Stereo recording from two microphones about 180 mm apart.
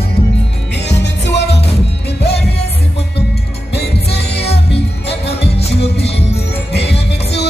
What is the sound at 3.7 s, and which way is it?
Music, 65° left (ahead or behind).